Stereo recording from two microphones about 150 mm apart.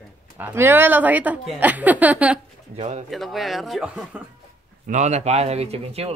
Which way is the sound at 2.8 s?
50° right (ahead or behind).